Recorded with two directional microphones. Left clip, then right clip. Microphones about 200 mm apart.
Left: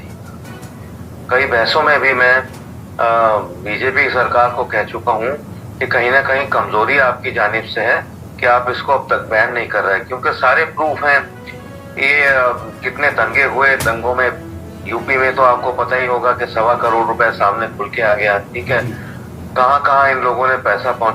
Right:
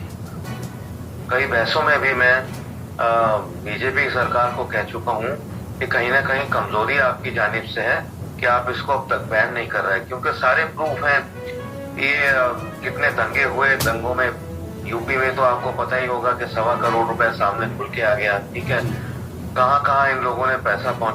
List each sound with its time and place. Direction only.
1.3 s speech: 45° left (ahead or behind)